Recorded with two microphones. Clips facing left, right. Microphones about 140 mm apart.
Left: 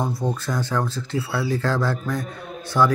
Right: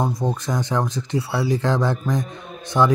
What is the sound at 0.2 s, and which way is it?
Speech, 20° right (ahead or behind).